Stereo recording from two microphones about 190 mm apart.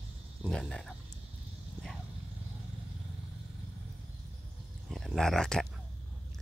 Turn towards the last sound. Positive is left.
turn(degrees=0)  # may be behind; listen again after turning